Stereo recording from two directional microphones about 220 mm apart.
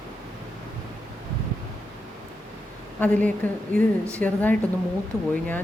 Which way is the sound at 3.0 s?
5° left (ahead or behind).